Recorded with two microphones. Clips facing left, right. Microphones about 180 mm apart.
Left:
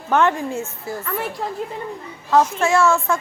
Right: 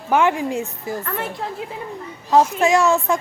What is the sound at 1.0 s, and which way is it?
Speech, centre (ahead or behind).